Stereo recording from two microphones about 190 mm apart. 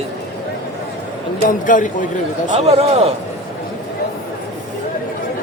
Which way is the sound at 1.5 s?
45° left (ahead or behind).